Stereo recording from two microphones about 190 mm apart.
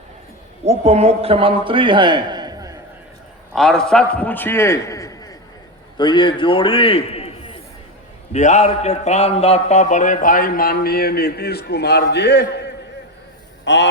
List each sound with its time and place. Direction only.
0.6 s a man's voice: 35° right (ahead or behind); by 2.7 s 20° right (ahead or behind)
3.5 s a man's voice: centre (ahead or behind); by 12.7 s 65° left (ahead or behind)
13.7 s a sound: 70° left (ahead or behind)